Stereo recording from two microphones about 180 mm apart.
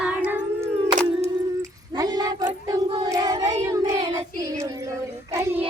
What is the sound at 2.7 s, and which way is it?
Child singing, 20° right (ahead or behind).